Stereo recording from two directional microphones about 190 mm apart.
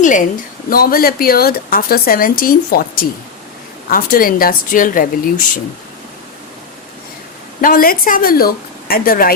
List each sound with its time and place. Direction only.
0.0 s a woman's voice: 40° left (ahead or behind)
7.6 s a woman's voice: 50° left (ahead or behind)